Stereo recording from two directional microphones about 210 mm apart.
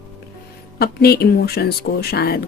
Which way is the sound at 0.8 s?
45° left (ahead or behind).